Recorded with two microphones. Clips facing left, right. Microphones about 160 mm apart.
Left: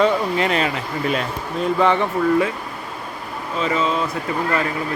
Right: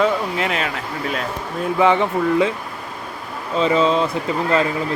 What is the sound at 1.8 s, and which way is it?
Speech, 15° right (ahead or behind).